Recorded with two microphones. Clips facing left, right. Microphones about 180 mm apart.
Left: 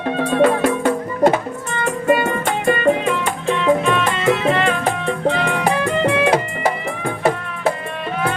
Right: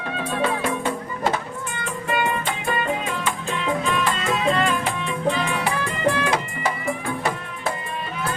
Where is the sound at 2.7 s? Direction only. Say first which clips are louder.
Left 10 dB; 70° left (ahead or behind).